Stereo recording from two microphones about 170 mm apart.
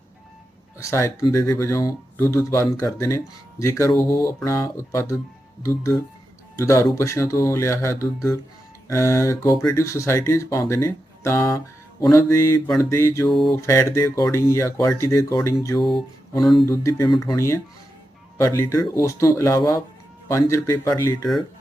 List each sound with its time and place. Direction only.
0.8 s speech: 15° left (ahead or behind)
6.6 s speech: 15° left (ahead or behind)
15.8 s mantra: centre (ahead or behind)
16.6 s speech: 20° left (ahead or behind)